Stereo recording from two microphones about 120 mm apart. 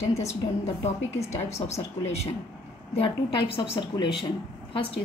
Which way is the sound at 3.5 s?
45° left (ahead or behind).